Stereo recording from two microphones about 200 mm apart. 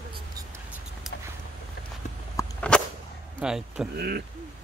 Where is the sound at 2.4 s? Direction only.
5° left (ahead or behind).